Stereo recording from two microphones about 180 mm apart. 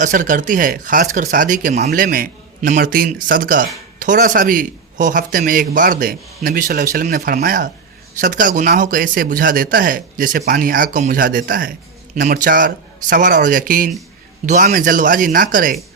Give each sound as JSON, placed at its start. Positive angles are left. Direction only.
{"t": 0.0, "sound": "a man's voice", "side_deg": -45}